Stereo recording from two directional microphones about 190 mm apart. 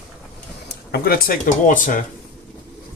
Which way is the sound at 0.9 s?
55° left (ahead or behind).